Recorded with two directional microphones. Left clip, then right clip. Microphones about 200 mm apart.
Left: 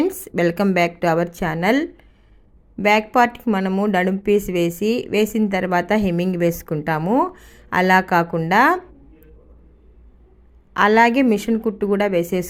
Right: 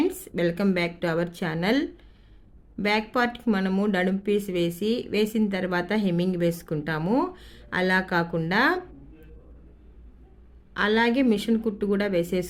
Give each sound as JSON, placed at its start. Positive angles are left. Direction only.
{"t": 0.0, "sound": "a woman's voice", "side_deg": 25}
{"t": 10.8, "sound": "speech", "side_deg": 25}